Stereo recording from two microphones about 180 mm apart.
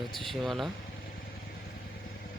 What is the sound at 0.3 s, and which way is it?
Speech, centre (ahead or behind).